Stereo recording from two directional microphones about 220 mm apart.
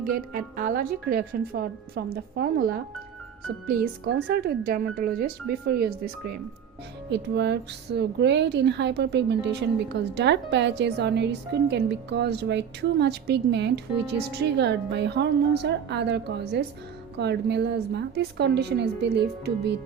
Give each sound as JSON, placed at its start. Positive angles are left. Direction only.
{"t": 0.3, "sound": "speech", "side_deg": -40}
{"t": 4.0, "sound": "speech", "side_deg": -45}
{"t": 7.1, "sound": "speech", "side_deg": -50}